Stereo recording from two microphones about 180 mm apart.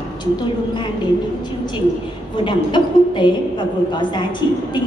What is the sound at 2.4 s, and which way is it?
A woman's voice, 25° left (ahead or behind).